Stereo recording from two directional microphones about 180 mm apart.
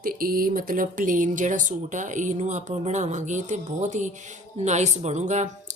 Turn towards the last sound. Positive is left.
turn(degrees=-40)  # may be behind; listen again after turning